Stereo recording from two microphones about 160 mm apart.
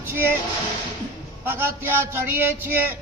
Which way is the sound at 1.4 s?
15° right (ahead or behind).